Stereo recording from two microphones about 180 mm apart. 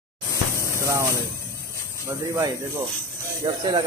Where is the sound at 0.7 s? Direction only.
15° right (ahead or behind).